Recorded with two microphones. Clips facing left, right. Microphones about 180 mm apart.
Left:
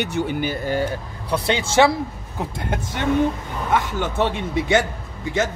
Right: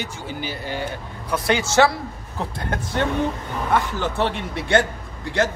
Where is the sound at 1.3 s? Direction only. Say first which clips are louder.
Even; 25° left (ahead or behind).